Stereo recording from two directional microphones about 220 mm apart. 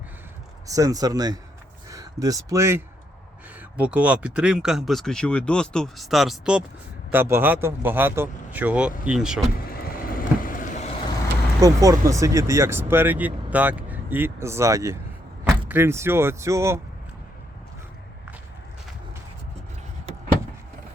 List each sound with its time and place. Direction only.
0.7 s speech: 15° right (ahead or behind)
9.6 s vehicle: 45° left (ahead or behind)
11.6 s speech: 15° right (ahead or behind)